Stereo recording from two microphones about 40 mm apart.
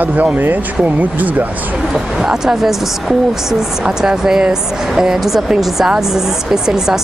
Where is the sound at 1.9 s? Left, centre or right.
Centre.